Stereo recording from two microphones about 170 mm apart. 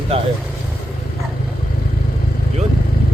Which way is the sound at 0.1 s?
35° right (ahead or behind).